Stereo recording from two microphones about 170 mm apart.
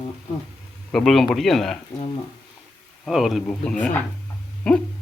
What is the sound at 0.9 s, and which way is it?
Speech, centre (ahead or behind).